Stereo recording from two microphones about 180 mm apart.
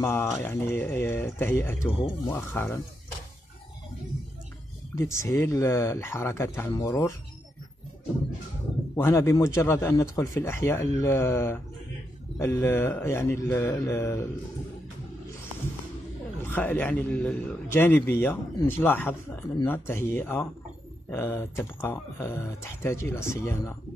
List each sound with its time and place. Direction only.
0.0 s a man's voice: 15° left (ahead or behind)
1.9 s speech: 25° left (ahead or behind)
2.3 s a man's voice: 15° left (ahead or behind)
4.9 s a man's voice: 15° left (ahead or behind)
8.9 s a man's voice: 15° left (ahead or behind)
16.4 s a man's voice: 10° left (ahead or behind)